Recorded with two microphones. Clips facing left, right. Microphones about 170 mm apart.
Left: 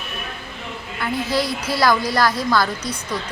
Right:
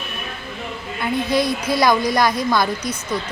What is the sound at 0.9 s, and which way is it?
A woman's voice, 20° right (ahead or behind).